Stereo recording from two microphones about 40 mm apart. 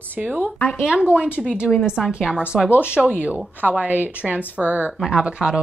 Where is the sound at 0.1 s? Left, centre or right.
Right.